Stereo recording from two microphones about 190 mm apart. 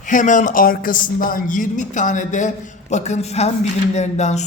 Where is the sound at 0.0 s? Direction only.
40° left (ahead or behind).